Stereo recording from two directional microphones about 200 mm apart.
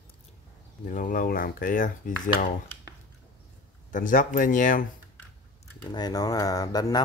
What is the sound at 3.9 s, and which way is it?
Speech, 40° left (ahead or behind).